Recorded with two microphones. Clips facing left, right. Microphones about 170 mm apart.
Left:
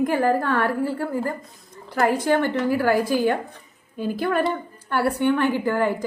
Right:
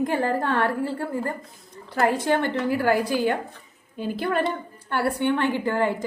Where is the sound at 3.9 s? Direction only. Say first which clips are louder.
Left 3 dB; 45° left (ahead or behind).